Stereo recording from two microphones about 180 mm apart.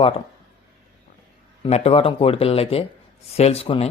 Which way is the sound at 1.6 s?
35° left (ahead or behind).